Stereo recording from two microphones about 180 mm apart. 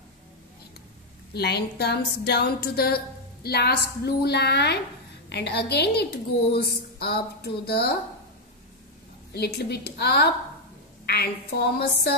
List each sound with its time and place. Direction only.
1.3 s a woman's voice: 65° left (ahead or behind)
9.3 s a woman's voice: 65° left (ahead or behind)